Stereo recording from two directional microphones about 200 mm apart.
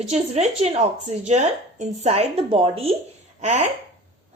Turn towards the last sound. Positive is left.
turn(degrees=-35)  # may be behind; listen again after turning